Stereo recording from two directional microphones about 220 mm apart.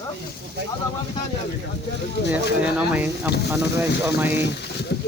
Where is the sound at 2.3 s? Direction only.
5° right (ahead or behind).